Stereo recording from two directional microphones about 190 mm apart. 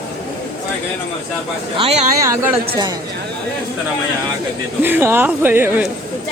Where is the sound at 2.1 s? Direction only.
15° right (ahead or behind).